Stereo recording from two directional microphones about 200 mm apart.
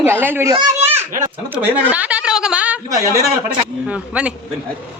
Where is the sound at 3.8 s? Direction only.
5° right (ahead or behind).